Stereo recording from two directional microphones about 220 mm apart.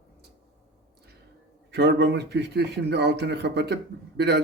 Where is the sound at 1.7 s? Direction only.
50° right (ahead or behind).